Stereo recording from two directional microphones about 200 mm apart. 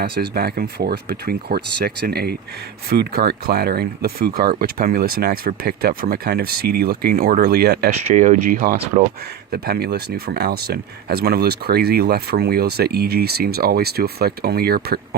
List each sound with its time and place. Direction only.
0.0 s speech: 50° right (ahead or behind)
8.0 s speech: 40° right (ahead or behind)